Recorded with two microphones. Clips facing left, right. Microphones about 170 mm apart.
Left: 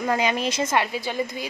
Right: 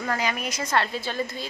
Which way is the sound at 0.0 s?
20° left (ahead or behind).